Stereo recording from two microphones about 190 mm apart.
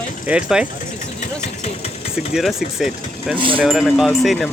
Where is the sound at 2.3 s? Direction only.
Centre (ahead or behind).